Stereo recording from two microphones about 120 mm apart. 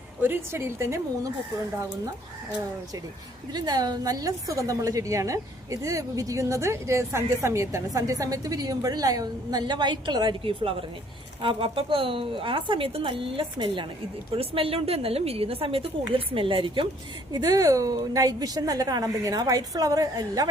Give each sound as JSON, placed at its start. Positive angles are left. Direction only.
{"t": 0.2, "sound": "a woman's voice", "side_deg": -20}
{"t": 3.5, "sound": "a woman's voice", "side_deg": -35}
{"t": 17.3, "sound": "a woman's voice", "side_deg": -30}